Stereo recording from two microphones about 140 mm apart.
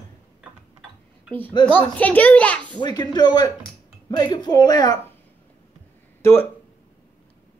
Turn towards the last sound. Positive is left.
turn(degrees=20)  # may be behind; listen again after turning